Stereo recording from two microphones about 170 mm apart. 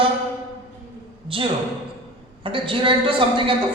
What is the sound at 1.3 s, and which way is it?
A woman's voice, 30° right (ahead or behind).